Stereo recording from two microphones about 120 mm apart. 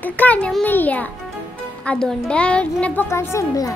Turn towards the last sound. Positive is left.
turn(degrees=25)  # may be behind; listen again after turning